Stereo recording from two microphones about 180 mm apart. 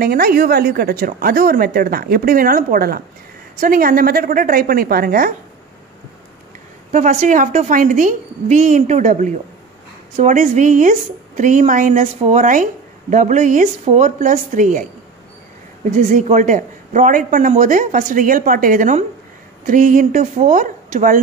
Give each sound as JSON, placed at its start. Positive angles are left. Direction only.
{"t": 0.0, "sound": "a woman's voice", "side_deg": -55}
{"t": 6.9, "sound": "a woman's voice", "side_deg": -45}
{"t": 15.9, "sound": "a woman's voice", "side_deg": -45}